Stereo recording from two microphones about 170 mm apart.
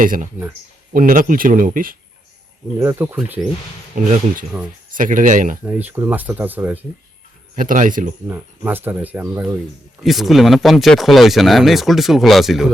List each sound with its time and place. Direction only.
0.0 s speech: 55° right (ahead or behind)
2.7 s speech: 15° right (ahead or behind)
3.9 s speech: 50° right (ahead or behind)
5.6 s speech: 10° right (ahead or behind)
7.5 s speech: 50° right (ahead or behind)
8.3 s speech: 10° right (ahead or behind)
10.0 s speech: centre (ahead or behind)